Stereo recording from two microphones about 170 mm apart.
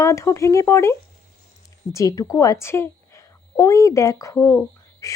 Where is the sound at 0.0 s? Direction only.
15° left (ahead or behind).